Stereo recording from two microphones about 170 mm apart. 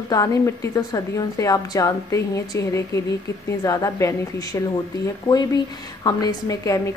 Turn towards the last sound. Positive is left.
turn(degrees=20)  # may be behind; listen again after turning